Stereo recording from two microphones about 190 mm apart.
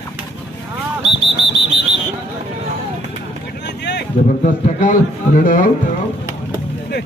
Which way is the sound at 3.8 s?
65° left (ahead or behind).